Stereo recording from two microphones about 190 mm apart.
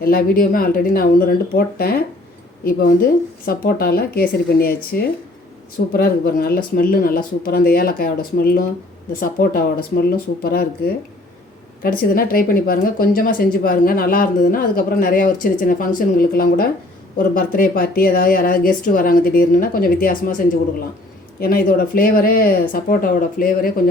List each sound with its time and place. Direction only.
0.0 s speech: 50° left (ahead or behind)